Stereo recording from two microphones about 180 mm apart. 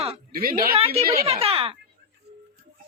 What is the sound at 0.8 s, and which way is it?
Speech, 35° right (ahead or behind).